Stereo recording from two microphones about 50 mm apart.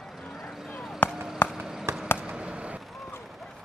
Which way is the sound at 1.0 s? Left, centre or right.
Left.